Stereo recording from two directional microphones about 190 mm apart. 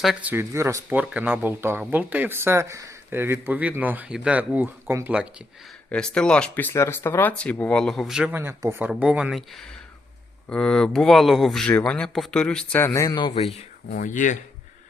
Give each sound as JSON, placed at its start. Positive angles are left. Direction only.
{"t": 0.0, "sound": "speech", "side_deg": -5}
{"t": 5.9, "sound": "speech", "side_deg": 5}
{"t": 13.9, "sound": "speech", "side_deg": 45}